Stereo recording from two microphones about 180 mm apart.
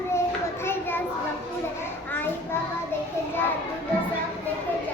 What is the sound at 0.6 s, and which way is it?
Children playing, 10° left (ahead or behind).